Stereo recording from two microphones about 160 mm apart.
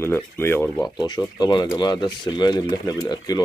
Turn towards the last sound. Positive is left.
turn(degrees=25)  # may be behind; listen again after turning